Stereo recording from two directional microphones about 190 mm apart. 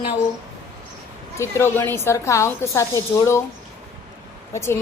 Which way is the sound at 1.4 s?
15° left (ahead or behind).